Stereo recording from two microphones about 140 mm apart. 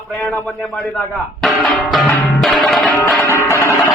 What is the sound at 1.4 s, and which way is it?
Speech, centre (ahead or behind).